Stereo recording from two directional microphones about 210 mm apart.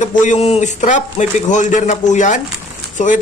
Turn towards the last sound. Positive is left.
turn(degrees=35)  # may be behind; listen again after turning